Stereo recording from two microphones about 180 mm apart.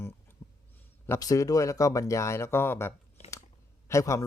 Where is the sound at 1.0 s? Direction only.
15° left (ahead or behind).